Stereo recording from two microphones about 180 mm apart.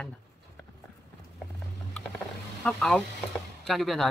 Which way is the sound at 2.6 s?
5° left (ahead or behind).